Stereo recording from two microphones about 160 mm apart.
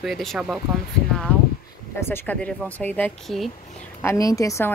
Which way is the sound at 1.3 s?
10° left (ahead or behind).